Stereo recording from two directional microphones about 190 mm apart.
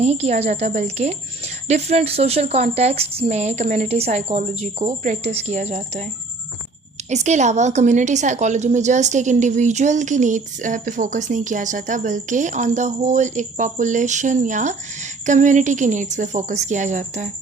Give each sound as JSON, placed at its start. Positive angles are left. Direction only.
{"t": 0.0, "sound": "a woman's voice", "side_deg": -35}
{"t": 7.1, "sound": "a woman's voice", "side_deg": -35}